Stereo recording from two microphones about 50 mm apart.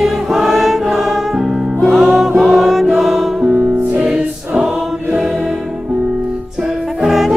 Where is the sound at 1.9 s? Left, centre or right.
Centre.